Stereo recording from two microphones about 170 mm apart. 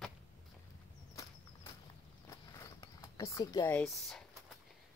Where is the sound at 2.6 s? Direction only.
20° left (ahead or behind).